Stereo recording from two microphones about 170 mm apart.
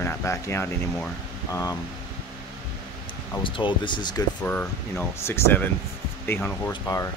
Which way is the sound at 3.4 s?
30° left (ahead or behind).